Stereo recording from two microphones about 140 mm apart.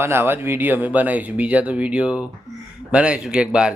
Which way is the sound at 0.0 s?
15° right (ahead or behind).